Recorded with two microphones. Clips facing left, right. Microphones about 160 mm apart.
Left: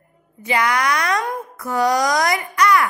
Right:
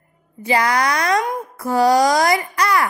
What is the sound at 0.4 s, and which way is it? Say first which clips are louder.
A child's voice: right 2 dB; 35° right (ahead or behind).